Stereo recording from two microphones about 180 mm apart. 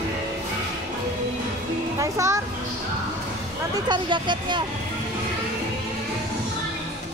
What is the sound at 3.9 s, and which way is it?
Speech, 25° right (ahead or behind).